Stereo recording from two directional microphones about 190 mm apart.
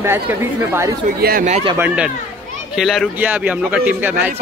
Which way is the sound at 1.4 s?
40° right (ahead or behind).